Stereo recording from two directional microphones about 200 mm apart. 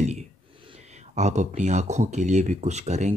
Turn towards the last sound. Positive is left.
turn(degrees=-35)  # may be behind; listen again after turning